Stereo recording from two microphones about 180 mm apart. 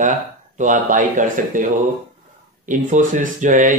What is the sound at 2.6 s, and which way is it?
Speech, 45° right (ahead or behind).